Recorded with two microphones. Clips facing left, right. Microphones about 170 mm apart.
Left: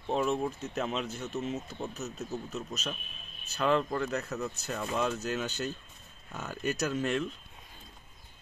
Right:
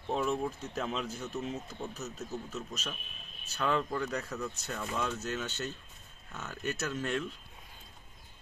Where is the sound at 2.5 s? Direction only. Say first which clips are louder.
Left 3 dB; 30° left (ahead or behind).